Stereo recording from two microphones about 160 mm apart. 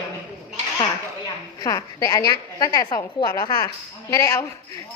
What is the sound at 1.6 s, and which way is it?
A woman's voice, 20° left (ahead or behind).